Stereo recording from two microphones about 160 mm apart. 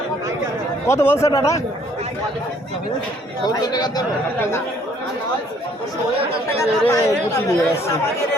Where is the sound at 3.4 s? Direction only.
25° left (ahead or behind).